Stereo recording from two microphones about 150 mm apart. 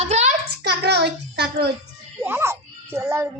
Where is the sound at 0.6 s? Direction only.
90° right.